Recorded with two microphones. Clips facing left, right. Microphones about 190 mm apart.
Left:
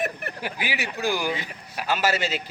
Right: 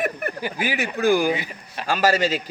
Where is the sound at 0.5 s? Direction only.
50° right (ahead or behind).